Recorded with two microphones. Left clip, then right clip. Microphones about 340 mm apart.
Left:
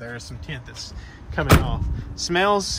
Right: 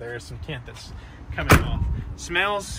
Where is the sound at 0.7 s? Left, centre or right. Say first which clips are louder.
Left 4 dB; centre.